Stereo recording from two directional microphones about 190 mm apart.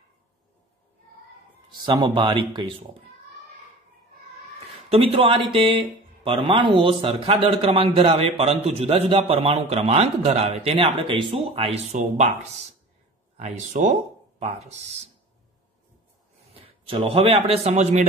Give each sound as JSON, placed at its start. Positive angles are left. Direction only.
{"t": 1.7, "sound": "speech", "side_deg": -25}
{"t": 4.8, "sound": "a man's voice", "side_deg": -30}
{"t": 16.5, "sound": "a man's voice", "side_deg": -30}